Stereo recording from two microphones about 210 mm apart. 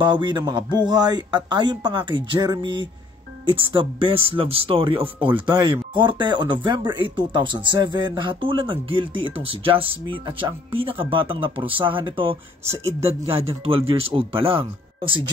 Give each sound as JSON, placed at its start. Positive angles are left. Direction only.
{"t": 0.0, "sound": "speech", "side_deg": -20}